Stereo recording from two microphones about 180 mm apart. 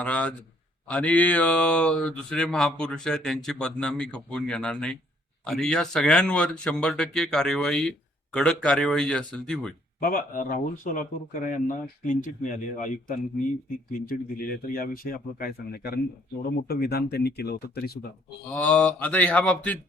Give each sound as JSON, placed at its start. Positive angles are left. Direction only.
{"t": 0.0, "sound": "speech", "side_deg": 10}
{"t": 10.0, "sound": "speech", "side_deg": 55}
{"t": 18.5, "sound": "speech", "side_deg": 5}